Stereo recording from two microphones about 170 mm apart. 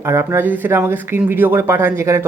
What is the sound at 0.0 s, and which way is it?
Speech, 15° right (ahead or behind).